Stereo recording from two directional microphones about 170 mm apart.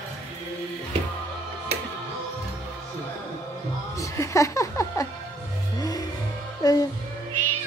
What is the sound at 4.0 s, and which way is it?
Music, 20° left (ahead or behind).